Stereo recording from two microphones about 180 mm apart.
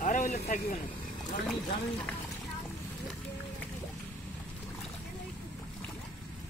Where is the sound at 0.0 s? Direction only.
40° left (ahead or behind).